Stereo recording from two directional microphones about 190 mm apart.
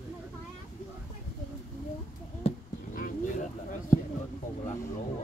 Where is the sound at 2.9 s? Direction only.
45° left (ahead or behind).